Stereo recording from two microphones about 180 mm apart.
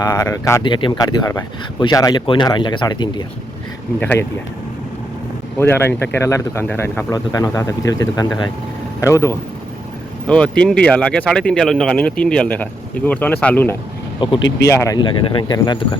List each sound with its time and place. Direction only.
0.0 s speech: 20° left (ahead or behind)
4.0 s speech: 10° left (ahead or behind)
5.5 s speech: 10° left (ahead or behind)
14.2 s speech: 25° left (ahead or behind)